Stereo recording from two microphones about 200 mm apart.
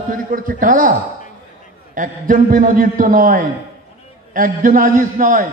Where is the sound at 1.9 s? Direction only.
40° right (ahead or behind).